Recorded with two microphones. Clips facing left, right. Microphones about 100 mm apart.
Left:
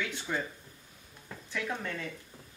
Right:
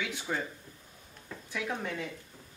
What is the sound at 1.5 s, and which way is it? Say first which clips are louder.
Speech: right 1 dB; 10° right (ahead or behind).